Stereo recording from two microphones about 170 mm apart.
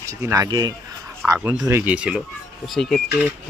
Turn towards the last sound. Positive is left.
turn(degrees=0)  # may be behind; listen again after turning